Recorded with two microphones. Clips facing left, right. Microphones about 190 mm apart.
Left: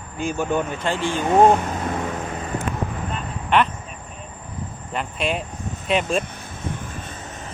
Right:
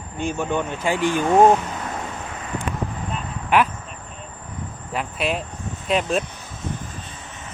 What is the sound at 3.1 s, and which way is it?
Vehicle, 5° right (ahead or behind).